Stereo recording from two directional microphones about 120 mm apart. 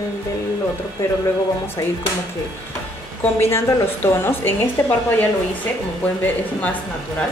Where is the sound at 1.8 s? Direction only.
30° left (ahead or behind).